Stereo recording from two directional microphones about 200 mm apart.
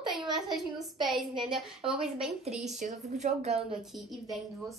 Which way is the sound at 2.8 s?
35° right (ahead or behind).